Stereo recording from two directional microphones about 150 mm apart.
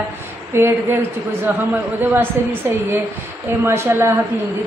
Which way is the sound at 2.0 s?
15° right (ahead or behind).